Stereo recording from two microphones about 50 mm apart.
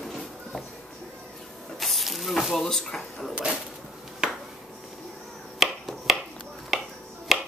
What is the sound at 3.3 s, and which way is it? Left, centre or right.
Speech, right.